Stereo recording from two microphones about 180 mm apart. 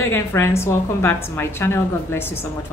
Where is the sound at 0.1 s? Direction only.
15° left (ahead or behind).